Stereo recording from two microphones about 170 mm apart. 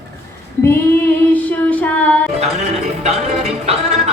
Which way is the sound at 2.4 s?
40° right (ahead or behind).